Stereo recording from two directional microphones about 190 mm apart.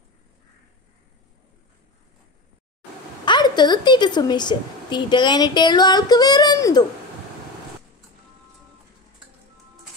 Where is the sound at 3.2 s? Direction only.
20° left (ahead or behind).